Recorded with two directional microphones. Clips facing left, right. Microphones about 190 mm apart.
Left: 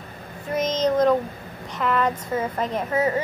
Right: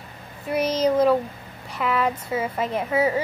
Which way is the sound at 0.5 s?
10° right (ahead or behind).